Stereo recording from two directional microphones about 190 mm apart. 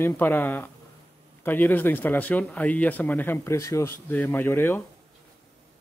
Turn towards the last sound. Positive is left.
turn(degrees=10)  # may be behind; listen again after turning